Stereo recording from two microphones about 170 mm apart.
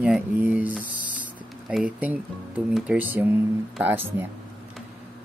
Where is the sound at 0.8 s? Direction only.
50° left (ahead or behind).